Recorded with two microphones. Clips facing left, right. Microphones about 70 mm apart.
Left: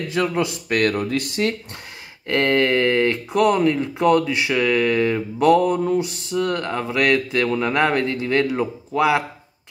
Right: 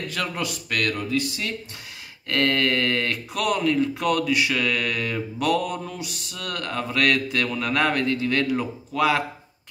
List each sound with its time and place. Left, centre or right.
0.1 s speech: left
0.9 s speech: left
2.2 s speech: left